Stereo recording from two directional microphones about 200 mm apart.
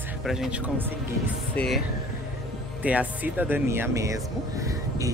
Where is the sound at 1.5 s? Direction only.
5° left (ahead or behind).